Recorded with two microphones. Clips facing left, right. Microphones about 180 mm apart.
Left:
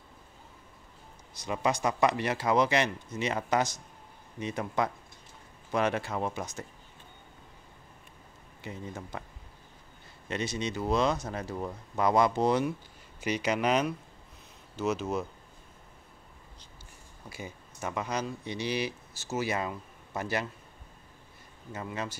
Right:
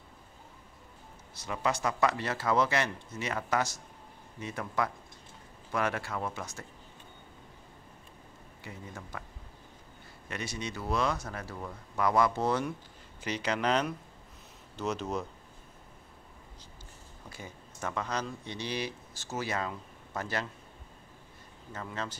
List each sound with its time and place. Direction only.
1.4 s speech: 15° left (ahead or behind)
8.6 s speech: 20° left (ahead or behind)
10.2 s speech: 20° left (ahead or behind); by 15.2 s 5° left (ahead or behind)
17.3 s speech: 10° left (ahead or behind)
21.7 s speech: 10° left (ahead or behind)